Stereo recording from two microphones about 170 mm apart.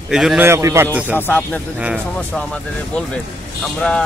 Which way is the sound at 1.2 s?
10° left (ahead or behind).